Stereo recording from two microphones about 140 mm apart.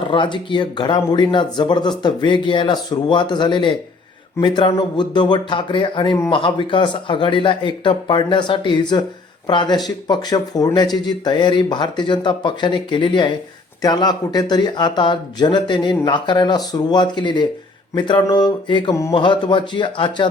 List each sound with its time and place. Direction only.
0.1 s speech: 35° left (ahead or behind)